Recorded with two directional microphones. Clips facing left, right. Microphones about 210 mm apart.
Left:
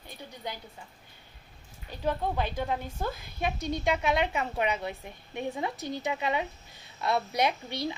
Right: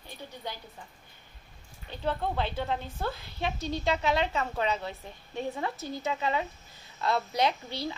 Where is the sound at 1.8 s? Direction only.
10° left (ahead or behind).